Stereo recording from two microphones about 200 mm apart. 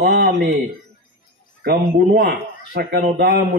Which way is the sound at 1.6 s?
45° right (ahead or behind).